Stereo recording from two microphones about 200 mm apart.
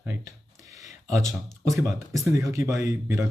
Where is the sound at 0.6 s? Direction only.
15° right (ahead or behind).